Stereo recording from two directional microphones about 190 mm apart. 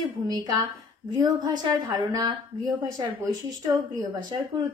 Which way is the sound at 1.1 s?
20° right (ahead or behind).